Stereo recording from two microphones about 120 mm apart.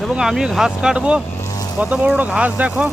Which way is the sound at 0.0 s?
5° right (ahead or behind).